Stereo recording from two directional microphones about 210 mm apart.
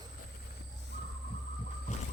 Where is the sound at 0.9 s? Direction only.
55° left (ahead or behind).